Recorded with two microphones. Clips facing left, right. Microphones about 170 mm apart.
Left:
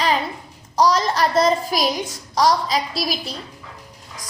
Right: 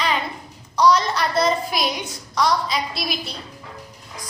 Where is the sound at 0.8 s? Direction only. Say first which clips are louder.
Even; 40° left (ahead or behind).